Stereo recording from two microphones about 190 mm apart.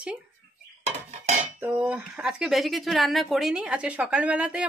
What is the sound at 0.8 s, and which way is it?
Dishes, 35° right (ahead or behind).